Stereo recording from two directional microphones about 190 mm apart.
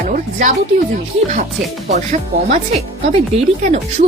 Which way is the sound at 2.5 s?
35° right (ahead or behind).